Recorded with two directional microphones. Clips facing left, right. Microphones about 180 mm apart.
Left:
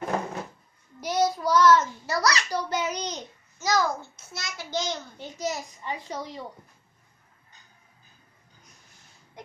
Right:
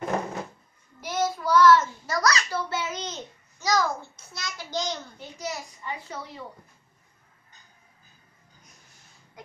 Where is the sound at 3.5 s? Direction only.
5° left (ahead or behind).